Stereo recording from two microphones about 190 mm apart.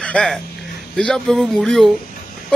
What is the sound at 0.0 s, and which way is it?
Speech, 5° left (ahead or behind).